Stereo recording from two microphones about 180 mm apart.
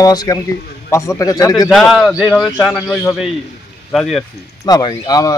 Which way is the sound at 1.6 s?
Centre (ahead or behind).